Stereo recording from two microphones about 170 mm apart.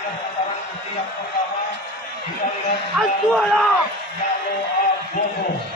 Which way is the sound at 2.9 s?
5° right (ahead or behind).